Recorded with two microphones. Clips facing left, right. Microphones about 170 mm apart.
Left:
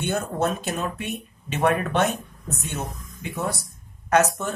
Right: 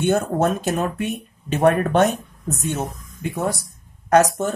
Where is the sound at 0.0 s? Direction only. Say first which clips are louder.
Right 6 dB; 50° right (ahead or behind).